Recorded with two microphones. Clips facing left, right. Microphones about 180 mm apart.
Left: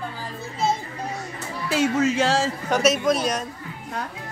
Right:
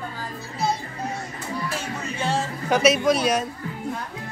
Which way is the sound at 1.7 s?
90° left.